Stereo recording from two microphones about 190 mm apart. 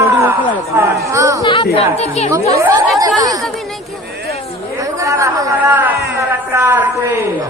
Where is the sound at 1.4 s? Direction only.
25° left (ahead or behind).